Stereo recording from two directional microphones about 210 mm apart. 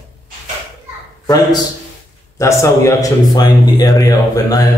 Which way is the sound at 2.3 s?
15° left (ahead or behind).